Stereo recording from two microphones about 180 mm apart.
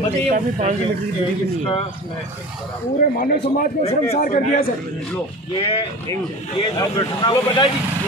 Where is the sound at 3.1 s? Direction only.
50° left (ahead or behind).